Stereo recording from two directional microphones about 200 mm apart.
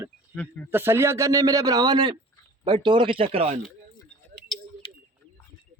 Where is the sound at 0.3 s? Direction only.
10° left (ahead or behind).